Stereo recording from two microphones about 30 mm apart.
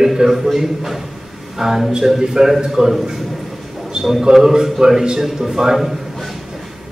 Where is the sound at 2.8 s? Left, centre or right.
Right.